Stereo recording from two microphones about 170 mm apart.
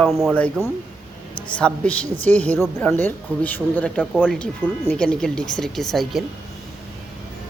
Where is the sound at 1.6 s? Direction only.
10° left (ahead or behind).